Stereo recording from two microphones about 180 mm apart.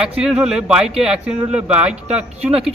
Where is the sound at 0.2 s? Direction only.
5° right (ahead or behind).